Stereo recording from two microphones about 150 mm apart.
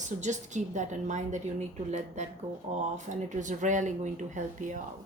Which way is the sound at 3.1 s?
55° right (ahead or behind).